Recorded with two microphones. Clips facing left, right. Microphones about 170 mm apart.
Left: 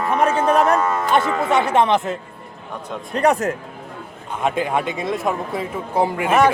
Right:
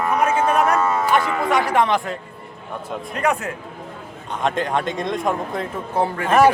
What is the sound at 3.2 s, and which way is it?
Speech, 40° left (ahead or behind).